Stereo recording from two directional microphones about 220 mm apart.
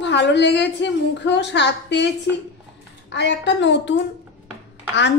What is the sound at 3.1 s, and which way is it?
Speech, 50° left (ahead or behind).